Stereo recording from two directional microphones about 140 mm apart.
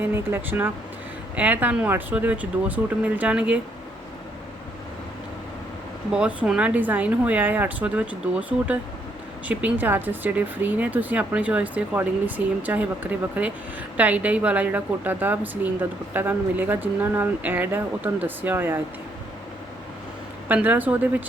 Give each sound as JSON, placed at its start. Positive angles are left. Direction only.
{"t": 0.0, "sound": "a woman's voice", "side_deg": -15}
{"t": 6.1, "sound": "a woman's voice", "side_deg": -5}
{"t": 20.5, "sound": "a woman's voice", "side_deg": -10}